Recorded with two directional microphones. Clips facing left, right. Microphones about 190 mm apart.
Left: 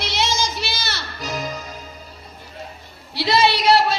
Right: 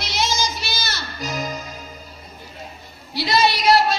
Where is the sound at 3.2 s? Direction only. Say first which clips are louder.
Left 1 dB; 30° left (ahead or behind).